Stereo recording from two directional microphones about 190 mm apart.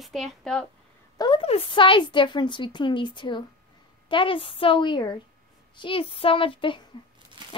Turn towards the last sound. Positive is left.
turn(degrees=25)  # may be behind; listen again after turning